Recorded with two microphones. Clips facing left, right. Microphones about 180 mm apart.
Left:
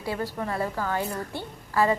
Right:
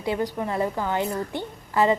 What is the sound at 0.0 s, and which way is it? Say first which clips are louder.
A woman's voice: right 4 dB; 20° right (ahead or behind).